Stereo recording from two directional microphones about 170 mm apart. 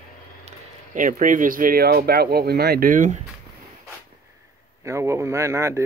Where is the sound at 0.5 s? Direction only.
50° right (ahead or behind).